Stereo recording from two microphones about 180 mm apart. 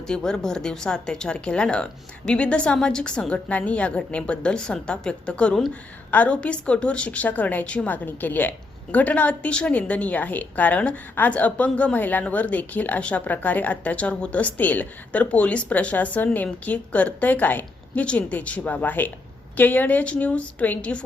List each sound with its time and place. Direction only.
0.1 s speech: 5° left (ahead or behind)